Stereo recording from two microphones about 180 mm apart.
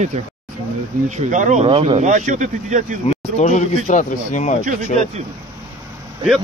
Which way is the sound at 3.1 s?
40° left (ahead or behind).